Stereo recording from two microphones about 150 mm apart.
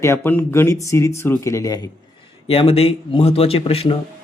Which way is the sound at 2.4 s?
40° left (ahead or behind).